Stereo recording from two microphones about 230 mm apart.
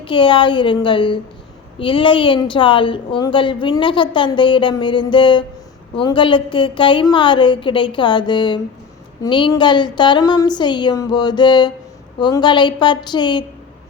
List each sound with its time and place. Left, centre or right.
0.0 s a woman's voice: left